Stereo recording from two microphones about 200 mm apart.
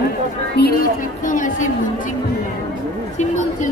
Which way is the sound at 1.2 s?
40° left (ahead or behind).